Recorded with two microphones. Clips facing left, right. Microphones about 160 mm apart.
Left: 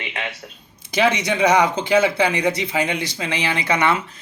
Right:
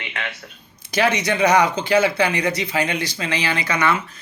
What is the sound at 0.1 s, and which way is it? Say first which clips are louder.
A man's voice: left 1 dB; 20° left (ahead or behind).